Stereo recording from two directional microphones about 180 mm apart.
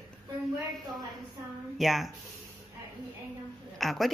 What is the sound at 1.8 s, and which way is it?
Speech, centre (ahead or behind).